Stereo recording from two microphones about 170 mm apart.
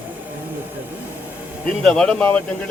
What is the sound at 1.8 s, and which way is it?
Speech, 5° left (ahead or behind).